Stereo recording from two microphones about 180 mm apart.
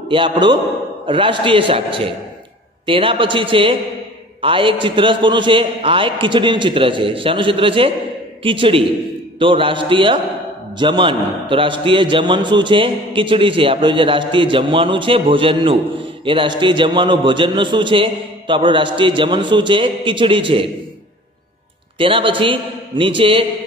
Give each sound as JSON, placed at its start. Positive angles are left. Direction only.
{"t": 0.1, "sound": "a man's voice", "side_deg": -25}
{"t": 21.9, "sound": "a man's voice", "side_deg": -30}